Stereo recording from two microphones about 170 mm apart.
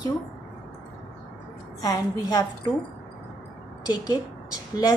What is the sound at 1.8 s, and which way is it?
Speech, 20° left (ahead or behind).